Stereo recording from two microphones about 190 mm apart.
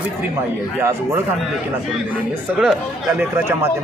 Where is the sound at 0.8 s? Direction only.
15° right (ahead or behind).